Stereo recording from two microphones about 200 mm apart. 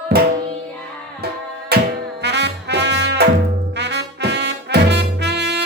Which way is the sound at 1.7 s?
50° right (ahead or behind).